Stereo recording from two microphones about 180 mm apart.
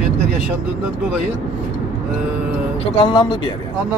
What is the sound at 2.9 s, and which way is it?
Speech, 30° left (ahead or behind).